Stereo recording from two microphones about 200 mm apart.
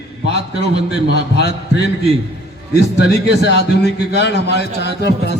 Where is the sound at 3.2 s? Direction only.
55° left (ahead or behind).